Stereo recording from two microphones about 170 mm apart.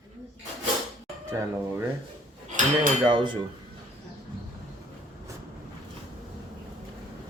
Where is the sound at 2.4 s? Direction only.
50° right (ahead or behind).